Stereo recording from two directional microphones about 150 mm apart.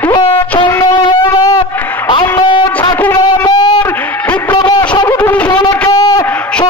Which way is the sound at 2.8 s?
10° left (ahead or behind).